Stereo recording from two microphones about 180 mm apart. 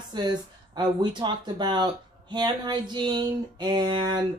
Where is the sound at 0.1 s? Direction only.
25° right (ahead or behind).